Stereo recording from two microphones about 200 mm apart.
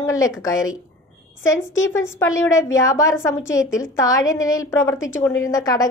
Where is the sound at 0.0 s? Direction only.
15° left (ahead or behind).